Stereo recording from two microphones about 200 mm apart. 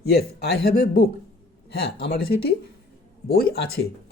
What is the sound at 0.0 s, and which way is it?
Speech, 50° left (ahead or behind).